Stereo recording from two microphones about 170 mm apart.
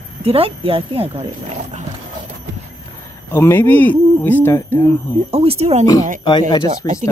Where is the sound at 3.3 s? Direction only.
15° left (ahead or behind).